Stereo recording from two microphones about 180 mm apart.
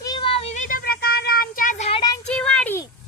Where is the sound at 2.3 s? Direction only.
5° left (ahead or behind).